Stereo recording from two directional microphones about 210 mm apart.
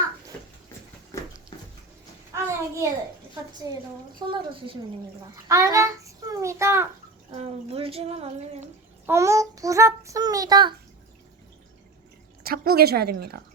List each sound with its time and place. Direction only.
1.1 s a sound: 15° left (ahead or behind)
1.5 s bathtub: 20° left (ahead or behind)
2.3 s a sound: 15° right (ahead or behind)
3.6 s child singing: 15° right (ahead or behind)
4.3 s a child's voice: 25° right (ahead or behind)
7.3 s speech: 30° right (ahead or behind)
9.0 s child singing: 15° right (ahead or behind)
12.4 s a woman's voice: 45° right (ahead or behind)